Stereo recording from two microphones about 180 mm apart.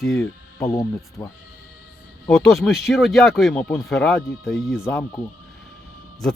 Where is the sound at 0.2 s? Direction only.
15° left (ahead or behind).